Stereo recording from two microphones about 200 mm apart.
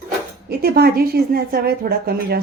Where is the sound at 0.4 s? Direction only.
50° right (ahead or behind).